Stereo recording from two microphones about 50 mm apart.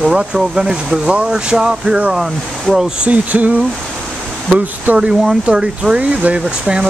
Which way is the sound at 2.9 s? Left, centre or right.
Right.